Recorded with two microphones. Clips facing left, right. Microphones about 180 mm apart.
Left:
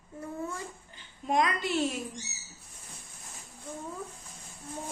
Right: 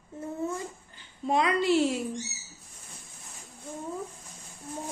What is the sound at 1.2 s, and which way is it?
Speech, 30° right (ahead or behind).